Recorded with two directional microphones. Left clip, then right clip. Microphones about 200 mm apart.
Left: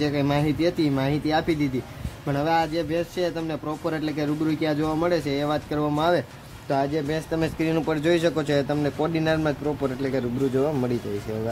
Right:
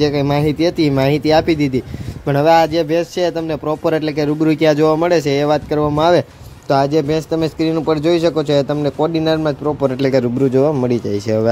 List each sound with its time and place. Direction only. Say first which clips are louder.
0.0 s speech: right 8 dB; 25° right (ahead or behind)
10.0 s speech: right 11 dB; 35° right (ahead or behind)